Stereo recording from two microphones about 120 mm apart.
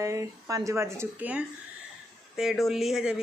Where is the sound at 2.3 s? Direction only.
Centre (ahead or behind).